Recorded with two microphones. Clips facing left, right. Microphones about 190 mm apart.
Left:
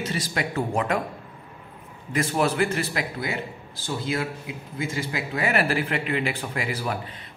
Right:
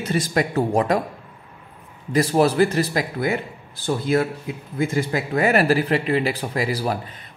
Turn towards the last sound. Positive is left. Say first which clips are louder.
# right 5 dB
turn(degrees=-35)  # may be behind; listen again after turning